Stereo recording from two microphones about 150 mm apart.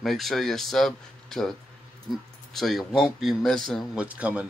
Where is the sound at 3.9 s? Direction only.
10° right (ahead or behind).